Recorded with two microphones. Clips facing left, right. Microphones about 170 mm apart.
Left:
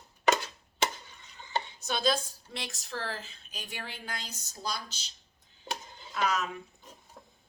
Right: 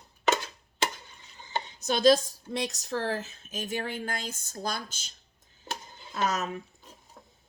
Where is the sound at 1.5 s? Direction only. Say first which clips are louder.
Right 3 dB; 40° right (ahead or behind).